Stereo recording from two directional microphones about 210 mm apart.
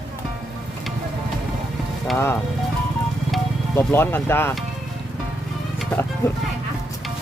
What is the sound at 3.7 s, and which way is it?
Speech, 10° left (ahead or behind).